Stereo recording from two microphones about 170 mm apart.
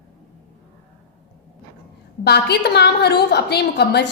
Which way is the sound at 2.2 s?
75° left (ahead or behind).